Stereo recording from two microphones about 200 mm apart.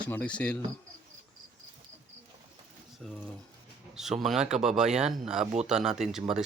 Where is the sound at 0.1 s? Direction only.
5° left (ahead or behind).